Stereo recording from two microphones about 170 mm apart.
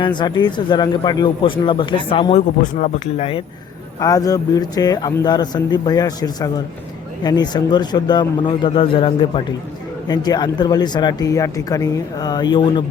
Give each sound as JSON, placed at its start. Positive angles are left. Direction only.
{"t": 0.2, "sound": "speech", "side_deg": 25}
{"t": 2.7, "sound": "speech", "side_deg": 50}
{"t": 4.0, "sound": "speech", "side_deg": 20}